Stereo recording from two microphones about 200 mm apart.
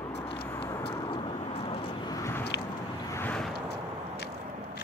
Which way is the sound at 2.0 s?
15° left (ahead or behind).